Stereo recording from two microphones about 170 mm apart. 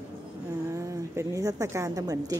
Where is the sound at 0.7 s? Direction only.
20° right (ahead or behind).